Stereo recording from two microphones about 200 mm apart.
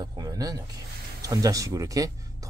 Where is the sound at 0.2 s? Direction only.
20° right (ahead or behind).